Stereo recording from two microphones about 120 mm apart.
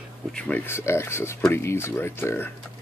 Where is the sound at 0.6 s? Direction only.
20° left (ahead or behind).